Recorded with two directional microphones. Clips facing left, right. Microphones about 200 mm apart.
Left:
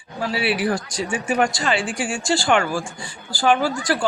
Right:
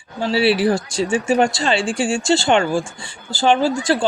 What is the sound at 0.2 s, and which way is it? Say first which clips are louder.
Speech: right 6 dB; 30° right (ahead or behind).